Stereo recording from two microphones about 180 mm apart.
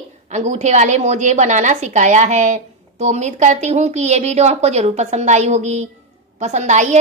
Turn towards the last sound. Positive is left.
turn(degrees=-40)  # may be behind; listen again after turning